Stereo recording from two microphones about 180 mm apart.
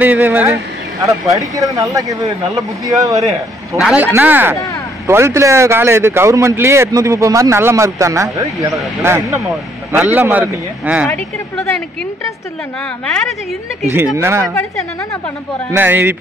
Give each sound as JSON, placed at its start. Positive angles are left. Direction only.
{"t": 0.0, "sound": "a man's voice", "side_deg": -10}
{"t": 3.7, "sound": "a man's voice", "side_deg": -5}
{"t": 11.1, "sound": "speech", "side_deg": 15}
{"t": 14.1, "sound": "a man's voice", "side_deg": -15}
{"t": 14.5, "sound": "speech", "side_deg": 15}
{"t": 15.7, "sound": "a man's voice", "side_deg": -10}